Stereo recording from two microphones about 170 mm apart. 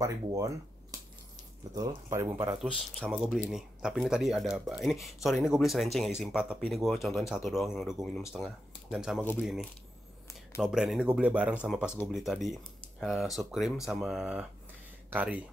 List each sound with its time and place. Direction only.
0.0 s speech: 20° right (ahead or behind)
1.8 s speech: 15° right (ahead or behind)
2.6 s speech: centre (ahead or behind)
10.6 s speech: centre (ahead or behind)